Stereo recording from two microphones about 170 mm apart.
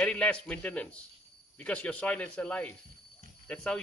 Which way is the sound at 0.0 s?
5° left (ahead or behind).